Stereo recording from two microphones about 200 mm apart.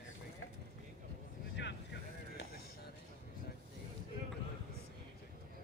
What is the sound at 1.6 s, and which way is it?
Boat, 60° left (ahead or behind).